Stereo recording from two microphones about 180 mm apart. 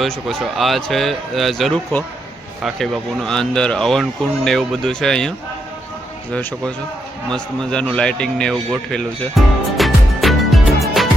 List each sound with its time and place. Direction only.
0.0 s speech: centre (ahead or behind)
6.3 s a man's voice: 5° left (ahead or behind)